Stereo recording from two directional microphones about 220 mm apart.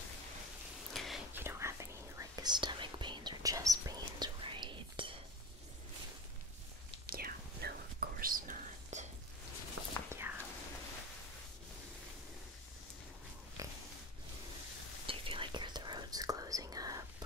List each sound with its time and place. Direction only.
0.9 s whispering: centre (ahead or behind); by 5.1 s 20° right (ahead or behind)
7.1 s whispering: 40° right (ahead or behind)
9.8 s whispering: 90° right
10.3 s whispering: 10° right (ahead or behind)
13.6 s pig: 15° right (ahead or behind)
15.0 s whispering: 25° right (ahead or behind)